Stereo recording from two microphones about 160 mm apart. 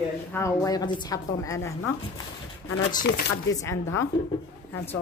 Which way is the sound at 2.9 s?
70° left (ahead or behind).